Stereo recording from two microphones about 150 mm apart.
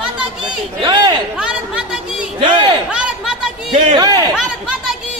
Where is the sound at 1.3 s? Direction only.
5° right (ahead or behind).